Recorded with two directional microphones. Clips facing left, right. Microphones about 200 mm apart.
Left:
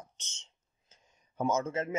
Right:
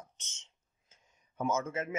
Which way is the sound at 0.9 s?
35° left (ahead or behind).